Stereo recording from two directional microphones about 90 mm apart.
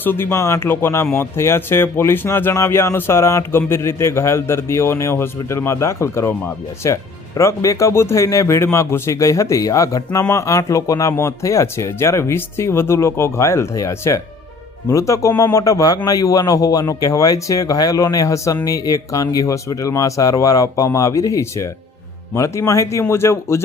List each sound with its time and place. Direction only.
0.0 s a man's voice: 25° left (ahead or behind)